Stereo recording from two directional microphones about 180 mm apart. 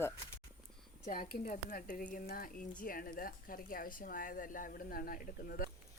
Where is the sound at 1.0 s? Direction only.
55° left (ahead or behind).